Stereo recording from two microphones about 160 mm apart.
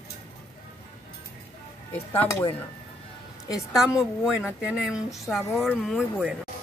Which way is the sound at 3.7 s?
5° right (ahead or behind).